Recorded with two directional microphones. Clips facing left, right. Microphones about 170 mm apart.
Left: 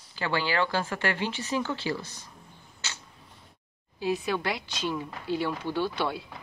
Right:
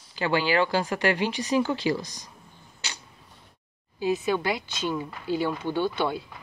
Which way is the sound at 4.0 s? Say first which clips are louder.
Right 3 dB; centre (ahead or behind).